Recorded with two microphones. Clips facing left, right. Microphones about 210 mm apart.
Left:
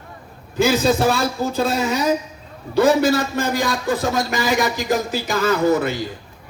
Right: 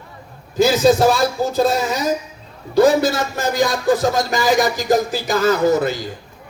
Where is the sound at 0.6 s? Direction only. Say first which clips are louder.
Right 3 dB; 40° right (ahead or behind).